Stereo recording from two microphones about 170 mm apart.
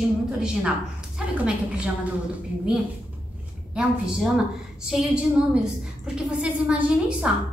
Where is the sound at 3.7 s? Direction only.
5° right (ahead or behind).